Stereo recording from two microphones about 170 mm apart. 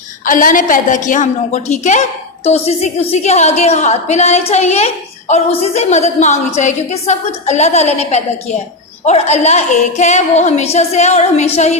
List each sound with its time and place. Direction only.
0.3 s a woman's voice: 55° left (ahead or behind)